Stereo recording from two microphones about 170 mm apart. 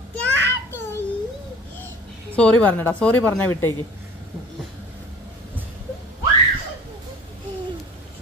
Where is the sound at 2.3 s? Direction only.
10° left (ahead or behind).